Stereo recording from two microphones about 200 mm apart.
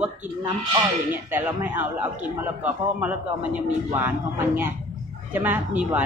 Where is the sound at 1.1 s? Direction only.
10° right (ahead or behind).